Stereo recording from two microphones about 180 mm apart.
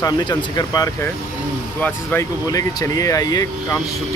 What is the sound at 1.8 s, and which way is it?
Speech, 10° left (ahead or behind).